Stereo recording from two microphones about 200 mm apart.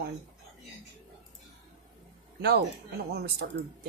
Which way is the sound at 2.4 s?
55° right (ahead or behind).